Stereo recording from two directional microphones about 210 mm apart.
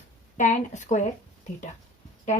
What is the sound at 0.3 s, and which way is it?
Speech, 35° left (ahead or behind).